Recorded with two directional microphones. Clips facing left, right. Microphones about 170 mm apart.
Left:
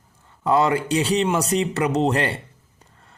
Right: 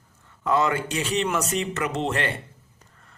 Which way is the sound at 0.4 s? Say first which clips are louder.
Left 4 dB; 30° left (ahead or behind).